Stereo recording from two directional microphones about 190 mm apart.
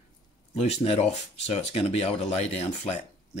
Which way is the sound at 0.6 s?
30° left (ahead or behind).